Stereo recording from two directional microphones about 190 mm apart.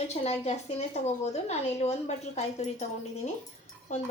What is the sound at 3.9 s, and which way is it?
Speech, 40° left (ahead or behind).